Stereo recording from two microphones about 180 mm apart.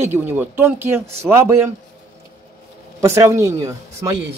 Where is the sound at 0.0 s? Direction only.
10° right (ahead or behind).